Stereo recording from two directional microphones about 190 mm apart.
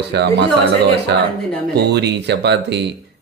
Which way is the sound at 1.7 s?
60° right (ahead or behind).